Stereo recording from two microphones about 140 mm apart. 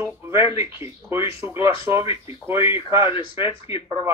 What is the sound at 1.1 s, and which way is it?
Speech, 20° right (ahead or behind).